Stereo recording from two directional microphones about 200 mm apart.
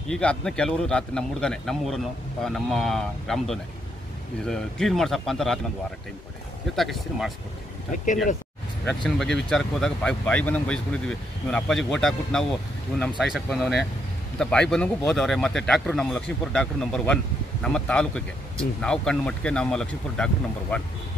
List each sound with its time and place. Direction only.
0.1 s speech: 5° left (ahead or behind)
6.7 s speech: centre (ahead or behind)
7.9 s speech: 40° left (ahead or behind)
9.0 s speech: centre (ahead or behind)